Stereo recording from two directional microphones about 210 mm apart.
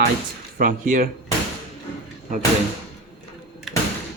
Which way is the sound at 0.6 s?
40° right (ahead or behind).